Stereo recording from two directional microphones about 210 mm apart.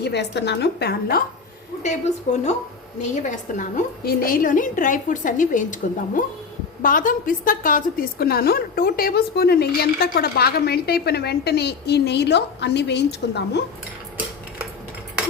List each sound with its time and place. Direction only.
0.0 s a woman's voice: 55° left (ahead or behind)
1.8 s a woman's voice: 35° left (ahead or behind); by 13.6 s 55° left (ahead or behind)